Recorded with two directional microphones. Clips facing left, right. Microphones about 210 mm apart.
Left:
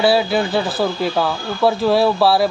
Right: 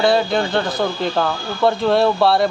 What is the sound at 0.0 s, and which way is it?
Speech, 5° left (ahead or behind).